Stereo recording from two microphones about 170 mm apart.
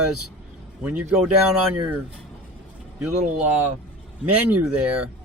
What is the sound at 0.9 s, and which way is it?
Speech, 10° right (ahead or behind).